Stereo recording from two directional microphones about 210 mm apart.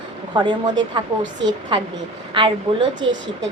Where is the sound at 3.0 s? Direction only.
25° right (ahead or behind).